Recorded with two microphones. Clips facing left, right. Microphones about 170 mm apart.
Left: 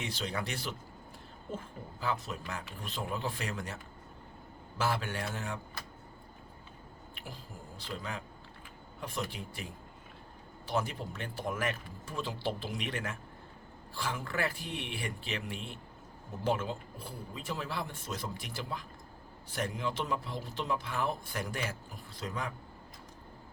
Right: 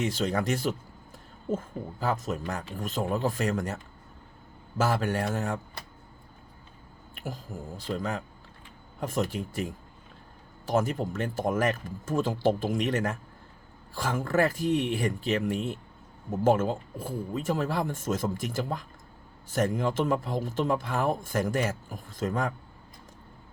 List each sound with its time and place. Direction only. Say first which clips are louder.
0.0 s speech: right 9 dB; 45° right (ahead or behind)
4.8 s speech: right 7 dB; 45° right (ahead or behind)
7.2 s speech: right 11 dB; 45° right (ahead or behind)